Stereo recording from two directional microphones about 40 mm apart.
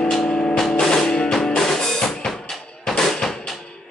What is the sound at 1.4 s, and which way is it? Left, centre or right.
Drum, centre.